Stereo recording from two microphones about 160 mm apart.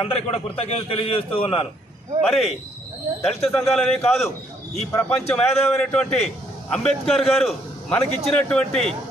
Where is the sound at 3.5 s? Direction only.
5° left (ahead or behind).